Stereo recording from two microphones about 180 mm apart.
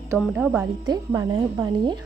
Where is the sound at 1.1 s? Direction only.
15° right (ahead or behind).